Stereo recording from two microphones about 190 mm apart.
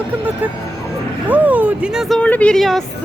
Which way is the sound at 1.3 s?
10° right (ahead or behind).